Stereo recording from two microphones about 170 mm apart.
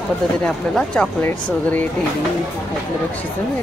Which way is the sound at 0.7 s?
5° left (ahead or behind).